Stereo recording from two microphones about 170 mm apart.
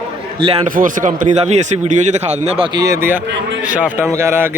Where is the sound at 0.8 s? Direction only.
50° right (ahead or behind).